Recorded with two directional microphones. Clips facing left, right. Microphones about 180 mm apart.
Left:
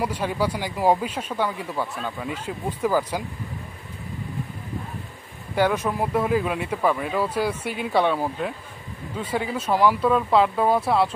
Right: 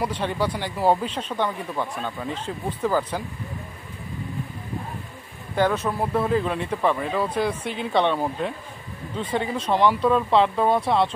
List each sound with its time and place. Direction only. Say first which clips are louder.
0.0 s speech: even; 10° left (ahead or behind)
5.6 s speech: even; 10° left (ahead or behind)